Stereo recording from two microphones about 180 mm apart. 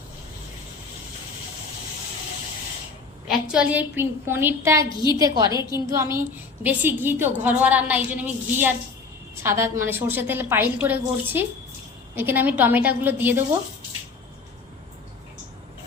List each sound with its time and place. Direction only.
3.2 s a woman's voice: 5° right (ahead or behind)